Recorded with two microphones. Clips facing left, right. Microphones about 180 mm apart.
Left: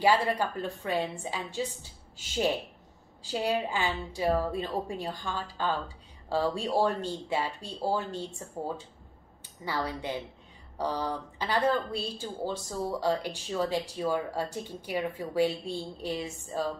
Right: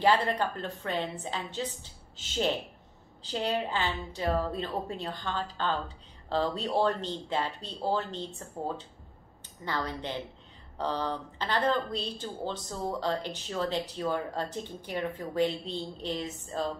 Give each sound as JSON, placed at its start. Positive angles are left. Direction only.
{"t": 0.0, "sound": "a woman's voice", "side_deg": 10}